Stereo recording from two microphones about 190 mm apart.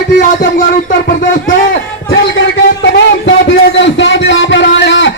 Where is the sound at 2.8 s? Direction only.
65° left (ahead or behind).